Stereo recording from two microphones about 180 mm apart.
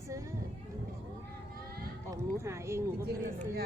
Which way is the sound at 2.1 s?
15° right (ahead or behind).